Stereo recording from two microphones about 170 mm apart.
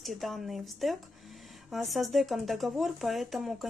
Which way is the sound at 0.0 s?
Centre (ahead or behind).